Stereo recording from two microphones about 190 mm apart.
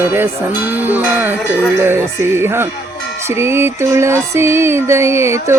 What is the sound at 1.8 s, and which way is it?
Music, 15° right (ahead or behind).